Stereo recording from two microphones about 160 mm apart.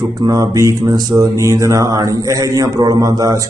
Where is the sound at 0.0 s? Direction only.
25° right (ahead or behind).